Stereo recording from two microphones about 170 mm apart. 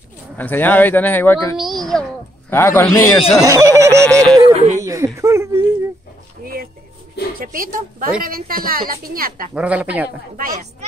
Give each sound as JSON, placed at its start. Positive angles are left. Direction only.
{"t": 0.4, "sound": "speech", "side_deg": 10}
{"t": 1.6, "sound": "a child's voice", "side_deg": 0}
{"t": 2.5, "sound": "speech", "side_deg": 15}
{"t": 3.4, "sound": "speech", "side_deg": -20}
{"t": 4.0, "sound": "yodeling", "side_deg": 5}
{"t": 4.5, "sound": "a sound", "side_deg": -40}
{"t": 4.7, "sound": "a sound", "side_deg": -20}
{"t": 6.4, "sound": "a sound", "side_deg": -60}
{"t": 7.3, "sound": "a woman's voice", "side_deg": -55}
{"t": 9.5, "sound": "speech", "side_deg": -10}
{"t": 10.3, "sound": "speech", "side_deg": -55}